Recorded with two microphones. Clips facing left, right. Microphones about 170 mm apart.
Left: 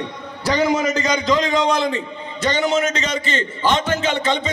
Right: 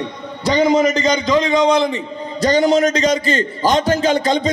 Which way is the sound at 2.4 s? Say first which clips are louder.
Right 5 dB; 35° right (ahead or behind).